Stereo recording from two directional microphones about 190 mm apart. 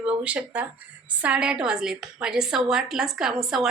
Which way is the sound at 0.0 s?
5° right (ahead or behind).